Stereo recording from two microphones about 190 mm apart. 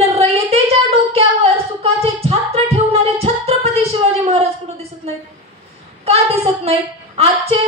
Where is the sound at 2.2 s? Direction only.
30° right (ahead or behind).